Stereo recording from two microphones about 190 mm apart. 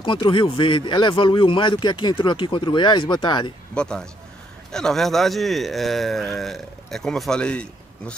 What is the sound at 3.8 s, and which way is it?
Speech, 5° left (ahead or behind).